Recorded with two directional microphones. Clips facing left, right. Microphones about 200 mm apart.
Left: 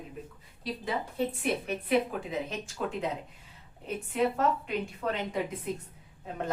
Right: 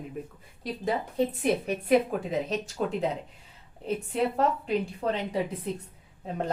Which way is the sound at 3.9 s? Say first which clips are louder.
Right 1 dB; 35° right (ahead or behind).